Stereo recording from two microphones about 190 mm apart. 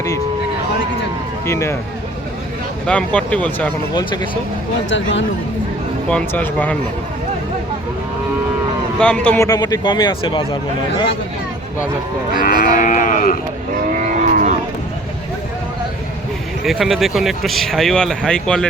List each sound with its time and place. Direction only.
1.5 s speech: 15° left (ahead or behind)
2.8 s speech: 5° left (ahead or behind)
3.9 s speech: 20° left (ahead or behind)
4.9 s speech: 75° left (ahead or behind)
6.1 s speech: 5° left (ahead or behind)
9.0 s speech: 5° left (ahead or behind)
9.5 s speech: 20° left (ahead or behind)
12.4 s livestock: 50° left (ahead or behind)
14.0 s livestock: 40° right (ahead or behind)
16.6 s speech: centre (ahead or behind)